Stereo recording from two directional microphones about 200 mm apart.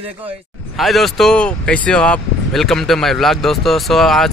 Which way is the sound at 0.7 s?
Centre (ahead or behind).